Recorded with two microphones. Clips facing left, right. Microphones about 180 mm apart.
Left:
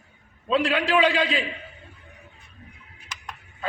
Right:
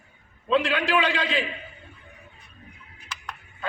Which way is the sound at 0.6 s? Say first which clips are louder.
Left 3 dB; 35° left (ahead or behind).